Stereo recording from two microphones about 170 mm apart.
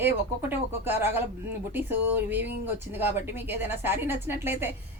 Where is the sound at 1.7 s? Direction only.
10° right (ahead or behind).